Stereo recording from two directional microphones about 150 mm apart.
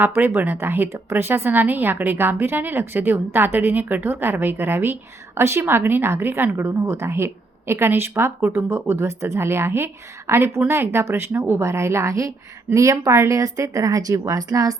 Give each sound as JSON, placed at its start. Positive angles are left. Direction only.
{"t": 0.0, "sound": "speech", "side_deg": -15}